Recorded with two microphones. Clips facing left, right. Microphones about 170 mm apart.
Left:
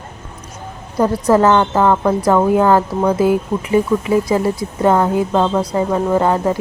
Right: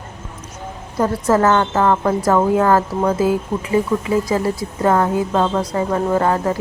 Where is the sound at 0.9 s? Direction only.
15° left (ahead or behind).